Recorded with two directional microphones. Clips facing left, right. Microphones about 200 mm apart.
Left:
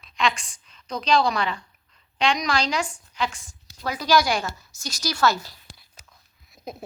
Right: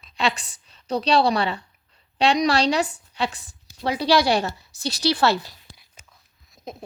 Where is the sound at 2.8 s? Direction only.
40° right (ahead or behind).